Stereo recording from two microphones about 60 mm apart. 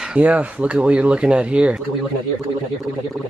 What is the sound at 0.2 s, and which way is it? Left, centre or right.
Speech, right.